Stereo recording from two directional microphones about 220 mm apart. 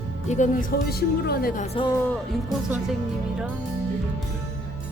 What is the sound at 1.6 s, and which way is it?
Speech, 25° left (ahead or behind).